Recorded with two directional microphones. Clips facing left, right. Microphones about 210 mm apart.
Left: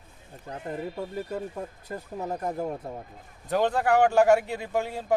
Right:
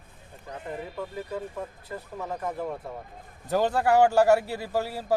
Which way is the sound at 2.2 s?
40° left (ahead or behind).